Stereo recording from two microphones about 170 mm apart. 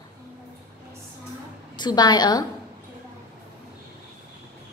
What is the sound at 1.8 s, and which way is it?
Speech, 25° left (ahead or behind).